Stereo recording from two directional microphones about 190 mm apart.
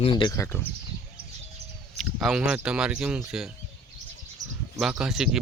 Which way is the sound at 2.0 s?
Centre (ahead or behind).